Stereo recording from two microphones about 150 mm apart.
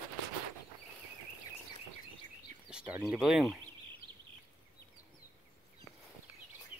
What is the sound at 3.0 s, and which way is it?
Speech, 5° right (ahead or behind).